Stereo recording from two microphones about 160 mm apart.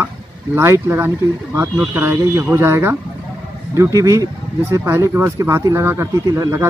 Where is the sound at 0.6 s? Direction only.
15° right (ahead or behind).